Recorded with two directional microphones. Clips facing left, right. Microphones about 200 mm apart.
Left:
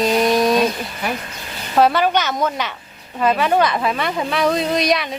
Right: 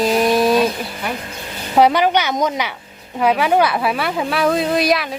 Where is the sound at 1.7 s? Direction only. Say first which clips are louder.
Right 2 dB; 15° right (ahead or behind).